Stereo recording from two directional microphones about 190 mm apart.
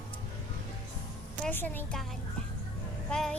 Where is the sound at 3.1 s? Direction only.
5° left (ahead or behind).